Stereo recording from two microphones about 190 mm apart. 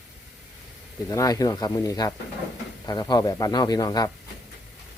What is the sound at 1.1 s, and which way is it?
Speech, 20° left (ahead or behind).